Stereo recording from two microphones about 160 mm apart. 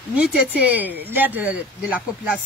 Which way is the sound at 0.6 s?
10° right (ahead or behind).